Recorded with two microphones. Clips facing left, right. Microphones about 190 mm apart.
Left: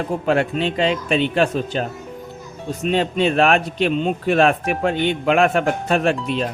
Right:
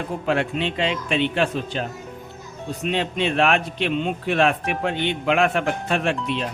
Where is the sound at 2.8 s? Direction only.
40° left (ahead or behind).